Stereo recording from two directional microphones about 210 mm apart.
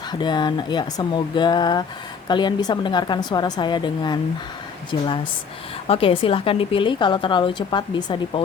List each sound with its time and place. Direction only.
0.1 s a woman's voice: 20° left (ahead or behind)
5.9 s a woman's voice: 25° left (ahead or behind)